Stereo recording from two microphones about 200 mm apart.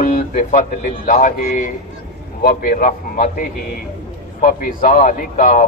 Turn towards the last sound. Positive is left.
turn(degrees=40)  # may be behind; listen again after turning